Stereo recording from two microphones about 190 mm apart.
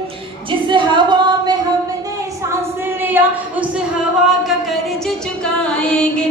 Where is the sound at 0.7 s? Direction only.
25° right (ahead or behind).